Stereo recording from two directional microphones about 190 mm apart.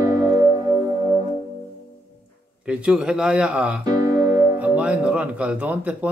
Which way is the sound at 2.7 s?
5° right (ahead or behind).